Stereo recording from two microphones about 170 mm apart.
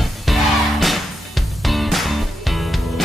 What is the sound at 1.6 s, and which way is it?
Music, centre (ahead or behind).